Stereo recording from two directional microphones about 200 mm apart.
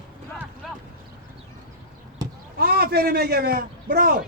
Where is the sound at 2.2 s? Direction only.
20° right (ahead or behind).